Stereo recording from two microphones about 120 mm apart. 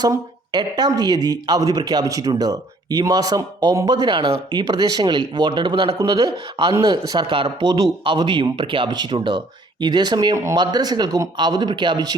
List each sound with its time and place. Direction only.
0.0 s speech: 35° right (ahead or behind)